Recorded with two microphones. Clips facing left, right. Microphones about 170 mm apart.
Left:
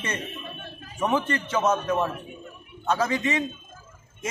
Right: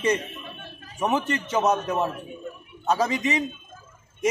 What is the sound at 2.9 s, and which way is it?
Speech, 15° right (ahead or behind).